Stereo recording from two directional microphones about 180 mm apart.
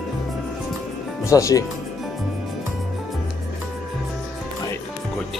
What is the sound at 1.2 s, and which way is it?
Speech, 20° left (ahead or behind).